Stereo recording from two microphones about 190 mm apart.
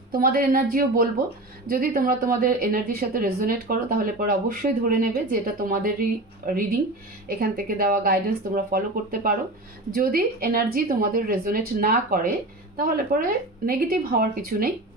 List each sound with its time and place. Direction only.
0.1 s speech: 50° right (ahead or behind)